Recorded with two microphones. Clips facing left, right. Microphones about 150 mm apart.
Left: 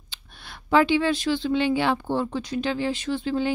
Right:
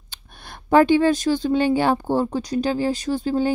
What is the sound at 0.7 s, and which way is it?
Speech, 45° right (ahead or behind).